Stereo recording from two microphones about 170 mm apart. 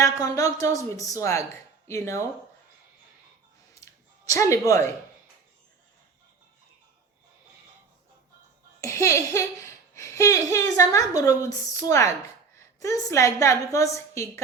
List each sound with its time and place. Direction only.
0.0 s a woman's voice: 20° left (ahead or behind)
4.3 s speech: 15° left (ahead or behind)
8.8 s a woman's voice: 15° left (ahead or behind)